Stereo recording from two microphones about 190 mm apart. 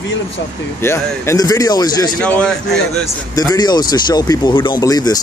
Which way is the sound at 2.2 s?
5° left (ahead or behind).